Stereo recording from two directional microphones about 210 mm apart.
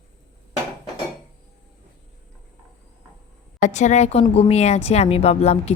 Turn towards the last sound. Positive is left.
turn(degrees=30)  # may be behind; listen again after turning